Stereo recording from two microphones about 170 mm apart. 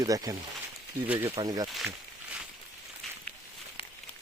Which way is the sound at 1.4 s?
20° right (ahead or behind).